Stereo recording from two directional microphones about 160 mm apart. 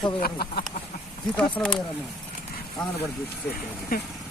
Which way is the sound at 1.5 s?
5° left (ahead or behind).